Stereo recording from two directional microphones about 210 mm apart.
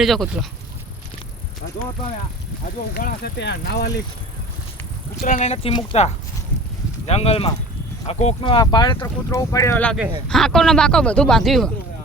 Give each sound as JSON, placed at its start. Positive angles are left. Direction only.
{"t": 0.0, "sound": "speech", "side_deg": 0}
{"t": 2.9, "sound": "speech", "side_deg": 50}
{"t": 5.2, "sound": "speech", "side_deg": 35}